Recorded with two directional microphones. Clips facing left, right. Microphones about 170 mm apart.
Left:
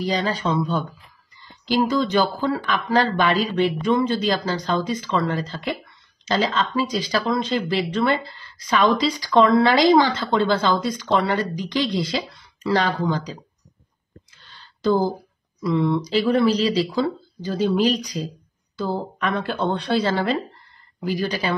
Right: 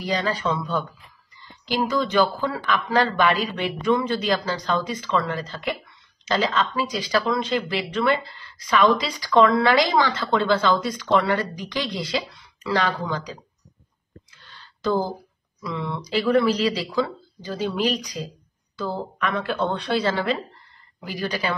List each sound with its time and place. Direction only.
0.0 s speech: 30° left (ahead or behind)
15.6 s speech: 40° left (ahead or behind)
16.3 s speech: 25° left (ahead or behind)